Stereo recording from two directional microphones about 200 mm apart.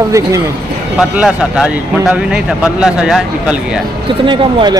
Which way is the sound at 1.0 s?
5° right (ahead or behind).